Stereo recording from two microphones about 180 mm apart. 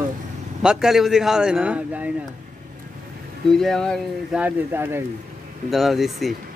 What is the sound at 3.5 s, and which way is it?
Speech, centre (ahead or behind).